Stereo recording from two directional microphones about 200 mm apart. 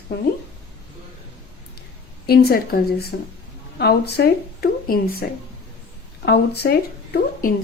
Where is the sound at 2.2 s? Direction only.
50° left (ahead or behind).